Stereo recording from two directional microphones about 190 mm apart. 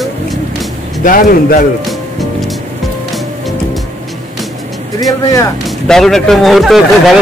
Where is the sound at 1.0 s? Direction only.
45° left (ahead or behind).